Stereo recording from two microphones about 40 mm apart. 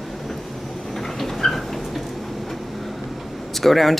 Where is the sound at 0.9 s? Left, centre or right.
Centre.